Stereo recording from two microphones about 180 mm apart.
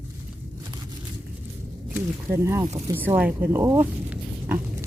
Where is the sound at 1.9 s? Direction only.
15° right (ahead or behind).